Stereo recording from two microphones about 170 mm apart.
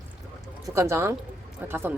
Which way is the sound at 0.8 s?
15° right (ahead or behind).